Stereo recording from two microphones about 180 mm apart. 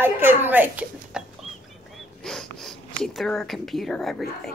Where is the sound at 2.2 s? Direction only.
Centre (ahead or behind).